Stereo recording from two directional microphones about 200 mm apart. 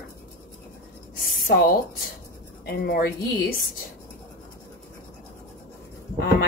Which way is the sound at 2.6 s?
50° left (ahead or behind).